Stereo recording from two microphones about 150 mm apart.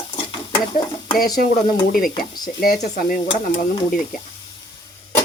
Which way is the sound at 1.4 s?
75° left (ahead or behind).